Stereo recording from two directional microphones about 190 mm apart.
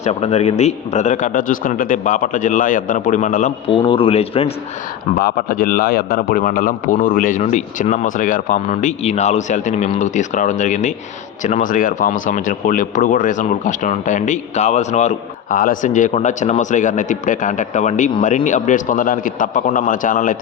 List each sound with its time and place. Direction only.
0.0 s speech: 35° left (ahead or behind)
3.7 s speech: 30° left (ahead or behind)
5.2 s speech: 50° left (ahead or behind)